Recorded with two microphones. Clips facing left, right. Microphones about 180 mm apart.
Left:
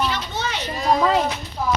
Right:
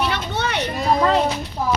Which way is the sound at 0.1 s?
60° right (ahead or behind).